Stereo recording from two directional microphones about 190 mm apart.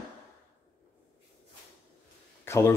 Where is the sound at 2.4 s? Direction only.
15° left (ahead or behind).